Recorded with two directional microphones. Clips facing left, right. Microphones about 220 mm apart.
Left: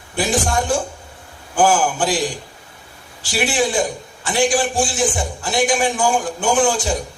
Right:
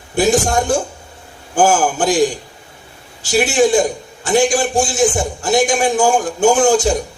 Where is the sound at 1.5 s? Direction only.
45° right (ahead or behind).